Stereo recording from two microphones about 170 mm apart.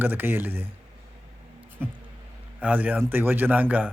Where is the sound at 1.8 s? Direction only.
15° right (ahead or behind).